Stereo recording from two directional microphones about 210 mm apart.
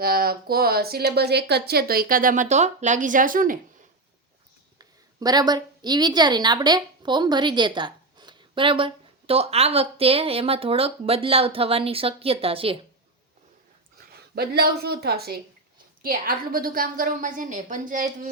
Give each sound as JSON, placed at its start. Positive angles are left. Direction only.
{"t": 0.0, "sound": "speech", "side_deg": -45}
{"t": 4.8, "sound": "a woman's voice", "side_deg": -20}
{"t": 14.1, "sound": "a woman's voice", "side_deg": -50}